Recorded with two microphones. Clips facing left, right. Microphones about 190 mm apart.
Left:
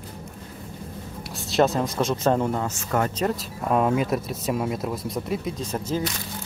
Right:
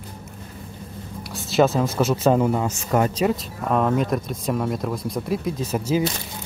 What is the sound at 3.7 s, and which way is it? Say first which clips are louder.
Speech: right 1 dB; 5° left (ahead or behind).